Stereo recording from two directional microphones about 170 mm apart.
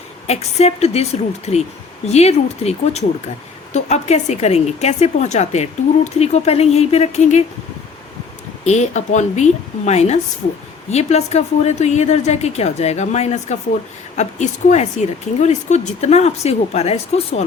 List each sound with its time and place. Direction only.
0.3 s a woman's voice: 40° left (ahead or behind)
8.6 s a woman's voice: 40° left (ahead or behind)